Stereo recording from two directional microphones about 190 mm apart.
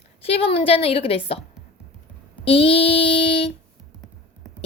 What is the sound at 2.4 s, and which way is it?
Child singing, 30° left (ahead or behind).